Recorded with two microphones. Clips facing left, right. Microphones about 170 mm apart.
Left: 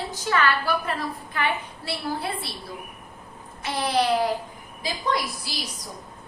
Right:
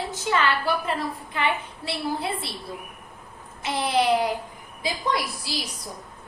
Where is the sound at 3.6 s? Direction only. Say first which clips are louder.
Right 1 dB; 20° right (ahead or behind).